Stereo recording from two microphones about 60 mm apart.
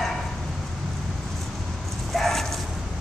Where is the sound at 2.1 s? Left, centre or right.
Centre.